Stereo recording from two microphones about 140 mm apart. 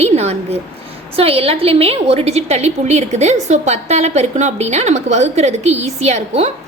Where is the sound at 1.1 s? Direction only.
45° right (ahead or behind).